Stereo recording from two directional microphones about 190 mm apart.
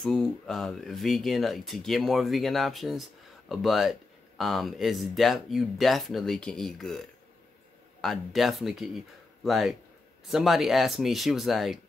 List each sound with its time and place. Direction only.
0.0 s speech: centre (ahead or behind)